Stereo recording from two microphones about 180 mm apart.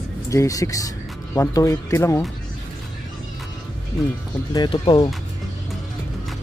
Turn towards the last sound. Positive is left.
turn(degrees=25)  # may be behind; listen again after turning